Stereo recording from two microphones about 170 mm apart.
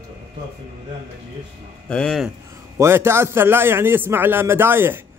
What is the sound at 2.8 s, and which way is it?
A man's voice, 15° right (ahead or behind).